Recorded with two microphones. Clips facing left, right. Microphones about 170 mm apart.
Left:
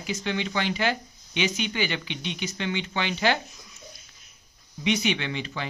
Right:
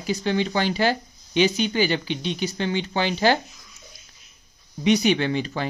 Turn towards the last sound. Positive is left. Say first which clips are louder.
# right 7 dB
turn(degrees=-40)  # may be behind; listen again after turning